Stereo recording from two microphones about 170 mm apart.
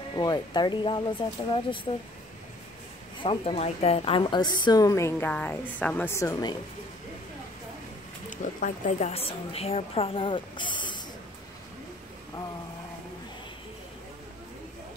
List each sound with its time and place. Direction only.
0.2 s a woman's voice: 25° left (ahead or behind)
3.2 s a woman's voice: 35° left (ahead or behind); by 6.5 s 20° left (ahead or behind)
8.3 s speech: 50° left (ahead or behind); by 11.0 s 25° left (ahead or behind)